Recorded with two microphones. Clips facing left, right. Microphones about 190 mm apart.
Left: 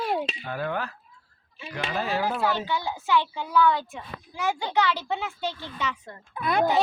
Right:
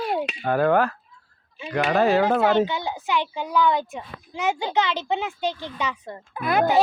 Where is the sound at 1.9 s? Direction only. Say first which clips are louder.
Right 9 dB; 75° right (ahead or behind).